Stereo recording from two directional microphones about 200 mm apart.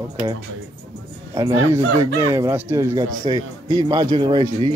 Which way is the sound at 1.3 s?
15° right (ahead or behind).